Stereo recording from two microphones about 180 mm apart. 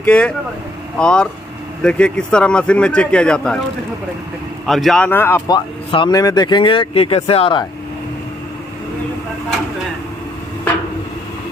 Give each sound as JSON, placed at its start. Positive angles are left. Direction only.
{"t": 0.0, "sound": "speech", "side_deg": 5}
{"t": 4.6, "sound": "speech", "side_deg": 0}
{"t": 5.5, "sound": "speech", "side_deg": 25}